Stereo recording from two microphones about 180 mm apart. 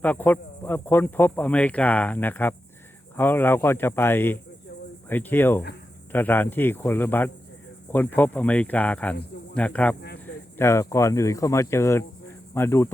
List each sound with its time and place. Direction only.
0.0 s speech: 10° left (ahead or behind)